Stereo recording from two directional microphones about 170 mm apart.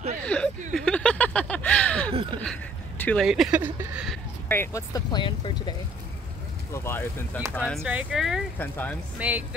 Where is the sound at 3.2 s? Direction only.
5° right (ahead or behind).